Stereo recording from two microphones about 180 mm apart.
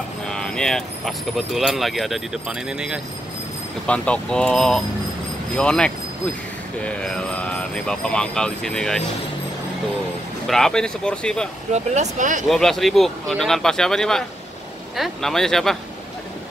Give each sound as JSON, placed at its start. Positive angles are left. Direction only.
{"t": 0.3, "sound": "speech", "side_deg": 5}
{"t": 3.8, "sound": "speech", "side_deg": 5}
{"t": 10.4, "sound": "speech", "side_deg": 0}
{"t": 11.7, "sound": "speech", "side_deg": -40}
{"t": 12.4, "sound": "speech", "side_deg": 0}